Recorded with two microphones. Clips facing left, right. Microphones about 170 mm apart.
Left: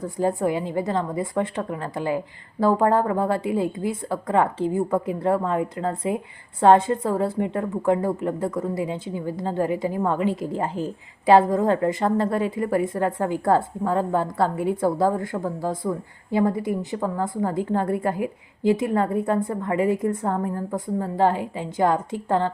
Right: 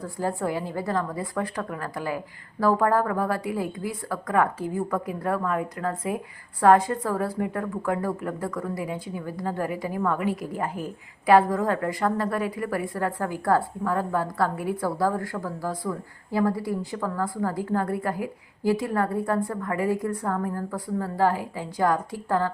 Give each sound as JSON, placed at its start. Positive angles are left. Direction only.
{"t": 0.0, "sound": "a woman's voice", "side_deg": 20}